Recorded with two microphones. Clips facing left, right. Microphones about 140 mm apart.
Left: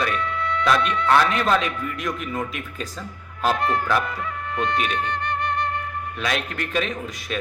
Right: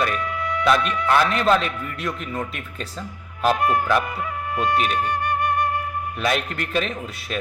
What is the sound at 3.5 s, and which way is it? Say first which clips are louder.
Speech: right 2 dB; 15° right (ahead or behind).